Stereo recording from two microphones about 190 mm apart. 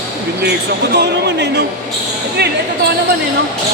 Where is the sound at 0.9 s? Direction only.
65° right (ahead or behind).